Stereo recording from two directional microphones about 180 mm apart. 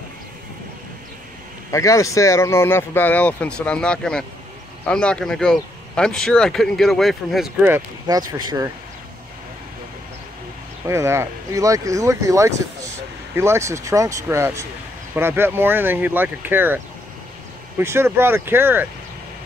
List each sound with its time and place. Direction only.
1.7 s speech: 15° left (ahead or behind); by 7.8 s 5° right (ahead or behind)
8.1 s speech: 20° right (ahead or behind)
10.9 s speech: 15° right (ahead or behind)